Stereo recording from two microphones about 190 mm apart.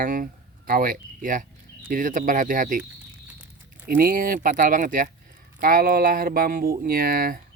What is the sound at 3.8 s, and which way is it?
Speech, 50° right (ahead or behind).